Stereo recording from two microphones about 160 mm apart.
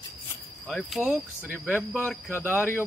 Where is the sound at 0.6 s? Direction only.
5° left (ahead or behind).